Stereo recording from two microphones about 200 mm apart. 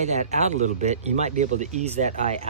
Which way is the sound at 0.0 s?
35° right (ahead or behind).